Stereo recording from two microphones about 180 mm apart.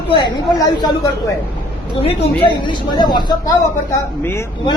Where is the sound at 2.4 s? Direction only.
25° left (ahead or behind).